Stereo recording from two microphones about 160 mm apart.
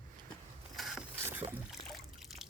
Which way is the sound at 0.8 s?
Centre (ahead or behind).